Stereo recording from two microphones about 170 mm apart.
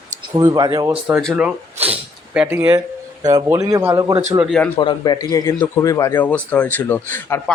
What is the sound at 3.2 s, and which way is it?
A man's voice, 20° right (ahead or behind).